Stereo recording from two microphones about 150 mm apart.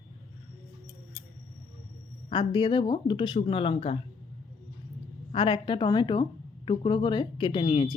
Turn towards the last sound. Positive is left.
turn(degrees=35)  # may be behind; listen again after turning